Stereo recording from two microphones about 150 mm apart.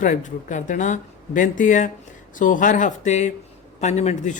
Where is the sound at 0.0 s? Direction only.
55° left (ahead or behind).